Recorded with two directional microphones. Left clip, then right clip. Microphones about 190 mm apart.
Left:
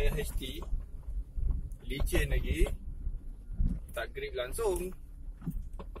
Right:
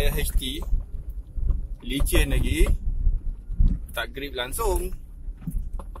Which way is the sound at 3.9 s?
25° right (ahead or behind).